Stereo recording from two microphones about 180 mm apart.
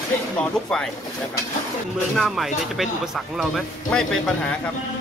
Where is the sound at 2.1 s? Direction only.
Centre (ahead or behind).